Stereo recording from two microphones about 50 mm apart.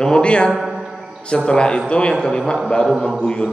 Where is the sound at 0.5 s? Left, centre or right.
Centre.